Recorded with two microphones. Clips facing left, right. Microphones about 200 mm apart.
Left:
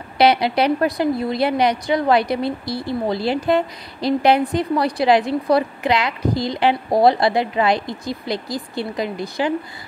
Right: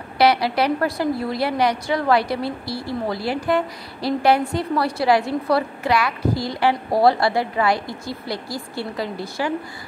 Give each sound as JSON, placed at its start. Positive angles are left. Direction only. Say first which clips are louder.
{"t": 0.2, "sound": "a woman's voice", "louder": "left 2 dB", "side_deg": 20}